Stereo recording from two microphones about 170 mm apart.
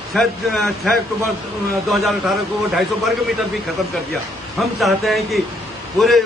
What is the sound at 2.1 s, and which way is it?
Speech, centre (ahead or behind).